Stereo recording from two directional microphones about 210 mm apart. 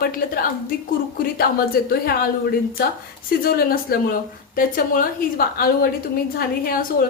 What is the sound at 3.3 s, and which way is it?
A woman's voice, 45° left (ahead or behind).